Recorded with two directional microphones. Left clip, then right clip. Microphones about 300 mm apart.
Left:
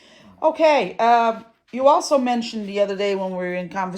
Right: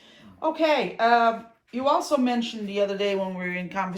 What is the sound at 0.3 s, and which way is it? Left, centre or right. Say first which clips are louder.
A woman's voice: left 6 dB; centre.